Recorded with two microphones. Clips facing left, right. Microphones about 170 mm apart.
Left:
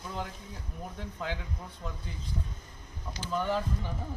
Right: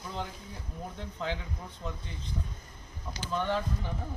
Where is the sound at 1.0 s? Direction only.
5° left (ahead or behind).